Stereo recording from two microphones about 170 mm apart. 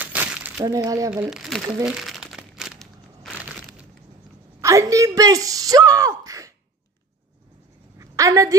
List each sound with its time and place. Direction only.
0.0 s crumpling: 10° right (ahead or behind)
0.7 s speech: 20° right (ahead or behind)
1.1 s speech: 5° right (ahead or behind)
1.9 s crumpling: centre (ahead or behind)
4.6 s speech: 20° right (ahead or behind)
8.0 s a sound: 20° right (ahead or behind)